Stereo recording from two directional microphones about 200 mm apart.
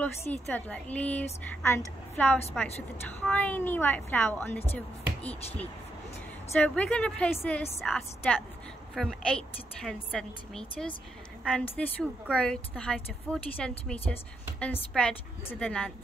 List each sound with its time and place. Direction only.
0.3 s a woman's voice: 10° left (ahead or behind)
6.6 s a woman's voice: 5° left (ahead or behind)